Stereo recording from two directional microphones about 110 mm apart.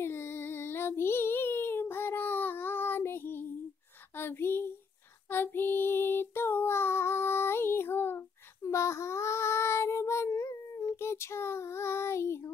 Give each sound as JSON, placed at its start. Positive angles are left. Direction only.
{"t": 0.0, "sound": "child singing", "side_deg": 20}
{"t": 4.2, "sound": "a sound", "side_deg": 20}
{"t": 5.3, "sound": "child singing", "side_deg": 20}